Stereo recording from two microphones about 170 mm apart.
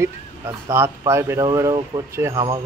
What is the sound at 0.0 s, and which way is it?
Speech, 15° right (ahead or behind).